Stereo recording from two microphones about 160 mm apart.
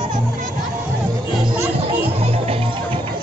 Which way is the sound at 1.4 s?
40° right (ahead or behind).